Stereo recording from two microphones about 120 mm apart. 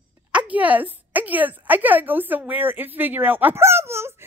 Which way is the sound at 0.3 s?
10° right (ahead or behind).